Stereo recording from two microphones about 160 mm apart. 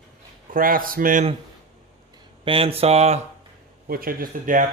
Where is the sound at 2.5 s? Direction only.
35° right (ahead or behind).